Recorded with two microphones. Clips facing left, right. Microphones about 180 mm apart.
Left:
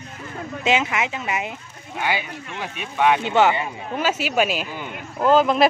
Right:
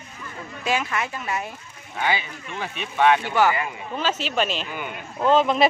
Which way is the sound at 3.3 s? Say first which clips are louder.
Left 3 dB; 25° left (ahead or behind).